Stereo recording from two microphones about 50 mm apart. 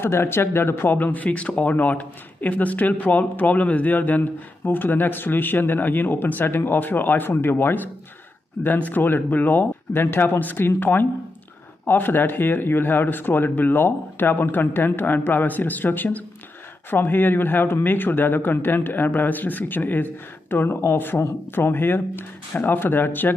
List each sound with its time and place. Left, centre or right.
0.0 s speech: left
8.7 s speech: left
9.0 s speech: left